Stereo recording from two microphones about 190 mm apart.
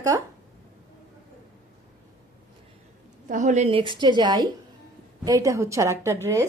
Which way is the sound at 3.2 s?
40° right (ahead or behind).